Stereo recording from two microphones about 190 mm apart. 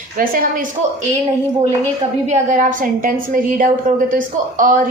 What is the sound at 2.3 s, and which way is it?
A woman's voice, 40° right (ahead or behind).